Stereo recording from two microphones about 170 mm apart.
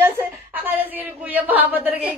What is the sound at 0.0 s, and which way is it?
A woman's voice, 10° right (ahead or behind).